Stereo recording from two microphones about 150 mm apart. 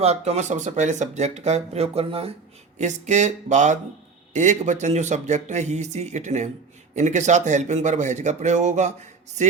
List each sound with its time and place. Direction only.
0.0 s speech: 45° right (ahead or behind)
2.7 s speech: 50° right (ahead or behind)